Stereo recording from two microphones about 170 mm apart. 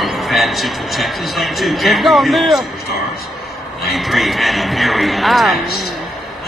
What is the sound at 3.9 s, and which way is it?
A man's voice, centre (ahead or behind).